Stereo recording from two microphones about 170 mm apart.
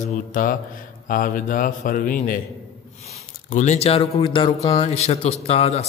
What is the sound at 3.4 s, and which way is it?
Speech, 45° left (ahead or behind).